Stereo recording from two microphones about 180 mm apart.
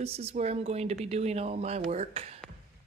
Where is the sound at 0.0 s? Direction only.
35° right (ahead or behind).